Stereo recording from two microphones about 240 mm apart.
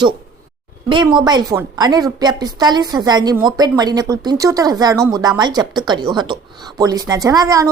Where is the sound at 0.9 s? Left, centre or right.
Centre.